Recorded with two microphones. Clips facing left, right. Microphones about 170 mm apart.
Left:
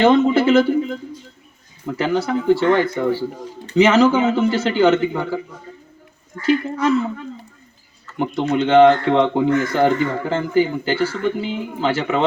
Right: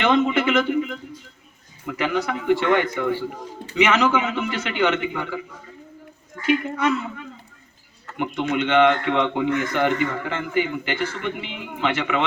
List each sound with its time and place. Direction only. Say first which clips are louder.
0.0 s a man's voice: left 6 dB; 35° left (ahead or behind)
6.4 s speech: left 3 dB; 35° left (ahead or behind)